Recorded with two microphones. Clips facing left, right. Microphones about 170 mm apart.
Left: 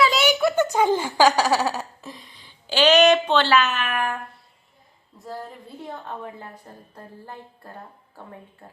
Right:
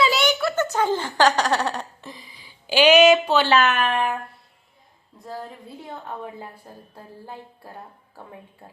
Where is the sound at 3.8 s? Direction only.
30° right (ahead or behind).